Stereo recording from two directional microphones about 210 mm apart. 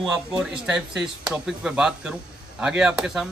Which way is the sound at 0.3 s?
5° right (ahead or behind).